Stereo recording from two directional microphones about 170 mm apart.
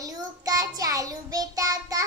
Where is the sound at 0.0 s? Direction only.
20° right (ahead or behind).